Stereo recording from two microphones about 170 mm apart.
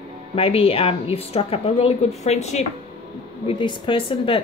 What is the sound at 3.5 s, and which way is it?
Speech, 30° left (ahead or behind).